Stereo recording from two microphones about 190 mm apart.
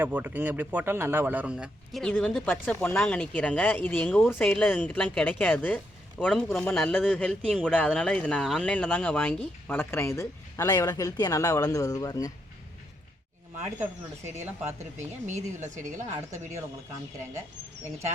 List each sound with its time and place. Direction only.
0.0 s a man's voice: 10° right (ahead or behind); by 12.3 s 20° left (ahead or behind)
14.9 s a woman's voice: 40° right (ahead or behind)